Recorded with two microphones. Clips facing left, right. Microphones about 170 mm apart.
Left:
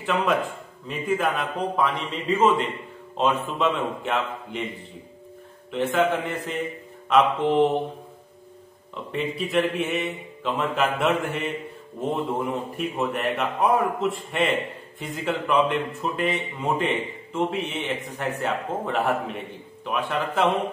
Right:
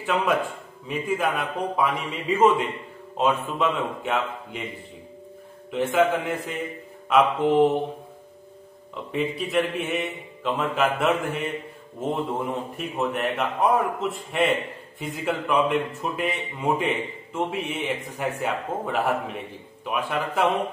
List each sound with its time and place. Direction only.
0.8 s speech: 5° right (ahead or behind)
5.7 s speech: 5° right (ahead or behind)
9.1 s speech: centre (ahead or behind)